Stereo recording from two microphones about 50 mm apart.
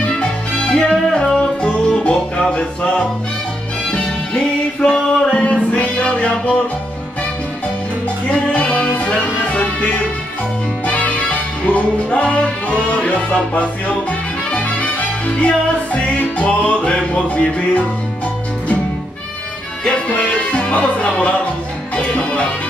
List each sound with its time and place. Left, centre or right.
0.0 s music: centre
8.5 s music: centre
10.9 s music: left
20.1 s music: left